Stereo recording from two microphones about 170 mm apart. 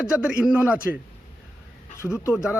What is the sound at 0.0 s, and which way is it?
Speech, 5° right (ahead or behind).